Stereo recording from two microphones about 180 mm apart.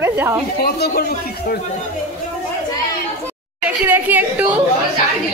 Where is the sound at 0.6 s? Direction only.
60° left (ahead or behind).